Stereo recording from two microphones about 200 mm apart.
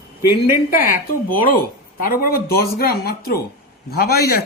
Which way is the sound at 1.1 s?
45° left (ahead or behind).